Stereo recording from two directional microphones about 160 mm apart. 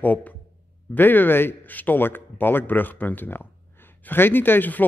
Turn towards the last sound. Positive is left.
turn(degrees=10)  # may be behind; listen again after turning